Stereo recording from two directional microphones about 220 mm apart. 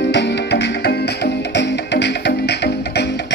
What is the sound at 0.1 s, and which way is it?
Music, 50° left (ahead or behind).